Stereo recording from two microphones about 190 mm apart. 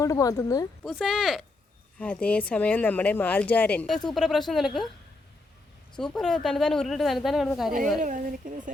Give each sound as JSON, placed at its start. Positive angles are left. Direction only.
{"t": 0.0, "sound": "speech", "side_deg": 20}
{"t": 0.8, "sound": "a woman's voice", "side_deg": 0}
{"t": 6.0, "sound": "a woman's voice", "side_deg": 5}
{"t": 8.0, "sound": "speech", "side_deg": -45}